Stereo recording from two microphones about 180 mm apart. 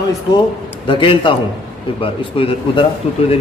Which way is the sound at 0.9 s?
30° left (ahead or behind).